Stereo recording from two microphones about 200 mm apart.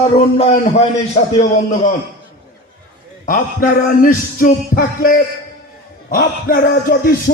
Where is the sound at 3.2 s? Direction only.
40° left (ahead or behind).